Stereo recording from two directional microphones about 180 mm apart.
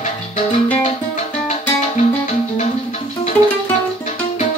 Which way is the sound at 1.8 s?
40° left (ahead or behind).